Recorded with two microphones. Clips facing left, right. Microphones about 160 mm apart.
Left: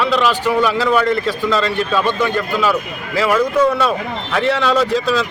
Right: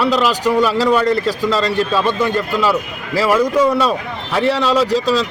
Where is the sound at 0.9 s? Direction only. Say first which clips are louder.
Right 1 dB; 35° right (ahead or behind).